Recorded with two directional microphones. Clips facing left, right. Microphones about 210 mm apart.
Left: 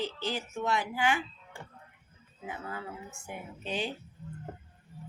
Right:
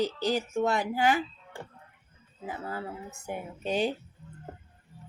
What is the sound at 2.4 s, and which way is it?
A woman's voice, 35° right (ahead or behind).